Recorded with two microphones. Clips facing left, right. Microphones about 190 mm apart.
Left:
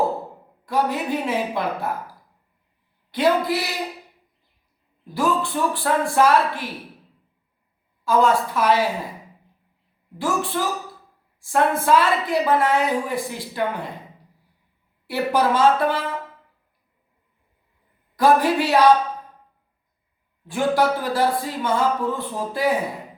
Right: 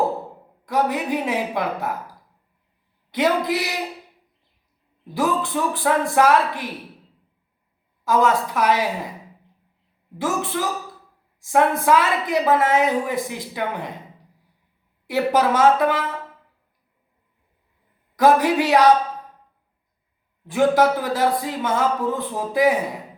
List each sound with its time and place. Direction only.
0.6 s speech: 15° right (ahead or behind)
3.1 s a woman's voice: 20° right (ahead or behind)
5.1 s speech: 20° right (ahead or behind)
8.0 s speech: 20° right (ahead or behind)
10.2 s a woman's voice: 20° right (ahead or behind)
15.0 s speech: 20° right (ahead or behind)
18.2 s speech: 15° right (ahead or behind)
20.5 s speech: 20° right (ahead or behind)